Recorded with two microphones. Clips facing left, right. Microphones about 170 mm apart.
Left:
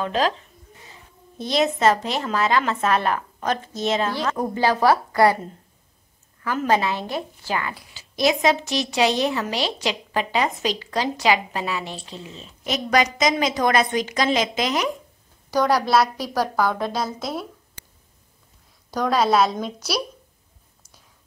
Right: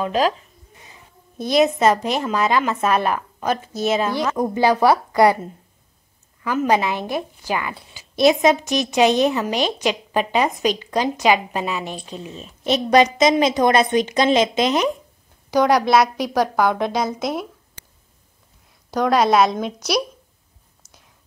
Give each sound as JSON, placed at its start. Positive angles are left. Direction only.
{"t": 0.0, "sound": "a woman's voice", "side_deg": -10}
{"t": 1.4, "sound": "a woman's voice", "side_deg": -10}
{"t": 6.4, "sound": "a woman's voice", "side_deg": -15}
{"t": 12.6, "sound": "a woman's voice", "side_deg": -25}
{"t": 15.5, "sound": "a woman's voice", "side_deg": -10}
{"t": 19.3, "sound": "a woman's voice", "side_deg": -5}